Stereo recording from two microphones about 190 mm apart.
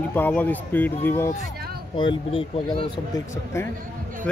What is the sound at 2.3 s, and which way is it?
Speech, 30° left (ahead or behind).